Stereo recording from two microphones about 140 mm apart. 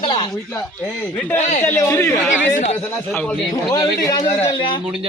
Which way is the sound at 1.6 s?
15° left (ahead or behind).